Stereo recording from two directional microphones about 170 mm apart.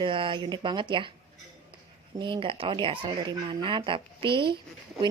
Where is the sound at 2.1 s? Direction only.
30° right (ahead or behind).